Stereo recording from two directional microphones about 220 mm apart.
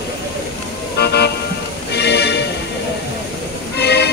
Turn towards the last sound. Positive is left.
turn(degrees=50)  # may be behind; listen again after turning